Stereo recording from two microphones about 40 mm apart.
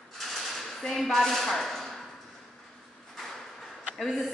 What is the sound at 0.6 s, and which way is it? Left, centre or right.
A woman's voice, centre.